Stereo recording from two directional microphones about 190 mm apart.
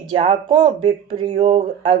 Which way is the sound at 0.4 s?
25° right (ahead or behind).